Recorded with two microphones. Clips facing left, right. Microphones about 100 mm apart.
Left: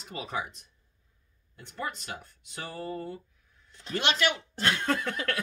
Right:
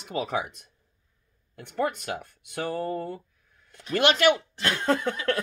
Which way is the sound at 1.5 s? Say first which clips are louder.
Right 9 dB; 60° right (ahead or behind).